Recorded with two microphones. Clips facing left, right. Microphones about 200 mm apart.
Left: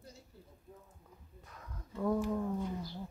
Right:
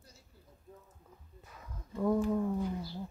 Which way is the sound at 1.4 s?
5° right (ahead or behind).